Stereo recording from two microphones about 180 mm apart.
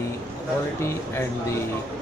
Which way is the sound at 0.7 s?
15° left (ahead or behind).